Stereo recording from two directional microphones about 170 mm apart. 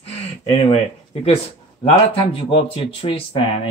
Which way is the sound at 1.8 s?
30° left (ahead or behind).